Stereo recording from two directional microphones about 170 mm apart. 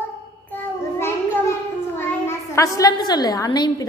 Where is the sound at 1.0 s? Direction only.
15° left (ahead or behind).